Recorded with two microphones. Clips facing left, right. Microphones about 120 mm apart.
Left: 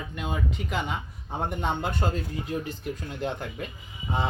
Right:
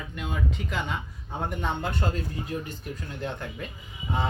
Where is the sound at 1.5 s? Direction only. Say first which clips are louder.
Left 1 dB; 20° left (ahead or behind).